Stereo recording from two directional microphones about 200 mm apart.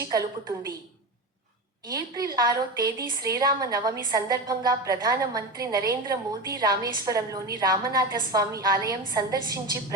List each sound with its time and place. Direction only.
0.0 s a woman's voice: 15° right (ahead or behind)
1.9 s a woman's voice: 20° right (ahead or behind)